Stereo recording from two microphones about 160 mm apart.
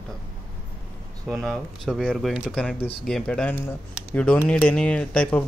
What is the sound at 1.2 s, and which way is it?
Speech, centre (ahead or behind).